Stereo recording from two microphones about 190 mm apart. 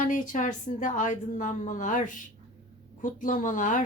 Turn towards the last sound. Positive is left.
turn(degrees=45)  # may be behind; listen again after turning